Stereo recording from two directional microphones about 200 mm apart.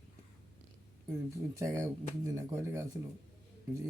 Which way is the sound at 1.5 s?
15° right (ahead or behind).